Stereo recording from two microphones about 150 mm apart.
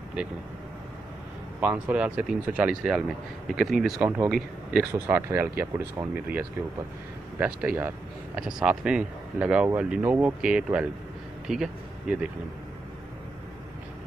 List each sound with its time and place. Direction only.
1.6 s speech: 10° right (ahead or behind)